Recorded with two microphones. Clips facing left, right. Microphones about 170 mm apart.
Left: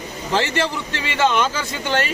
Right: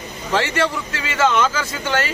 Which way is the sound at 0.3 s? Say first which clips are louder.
Right 1 dB; 30° left (ahead or behind).